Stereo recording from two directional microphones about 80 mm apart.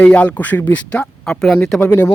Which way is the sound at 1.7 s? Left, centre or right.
Left.